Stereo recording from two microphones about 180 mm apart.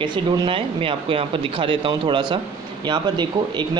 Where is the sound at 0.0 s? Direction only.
25° right (ahead or behind).